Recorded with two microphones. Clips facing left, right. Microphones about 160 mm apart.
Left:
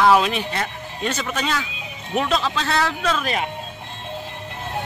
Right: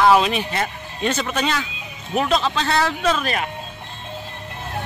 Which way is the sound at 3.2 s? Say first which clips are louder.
Even; 15° left (ahead or behind).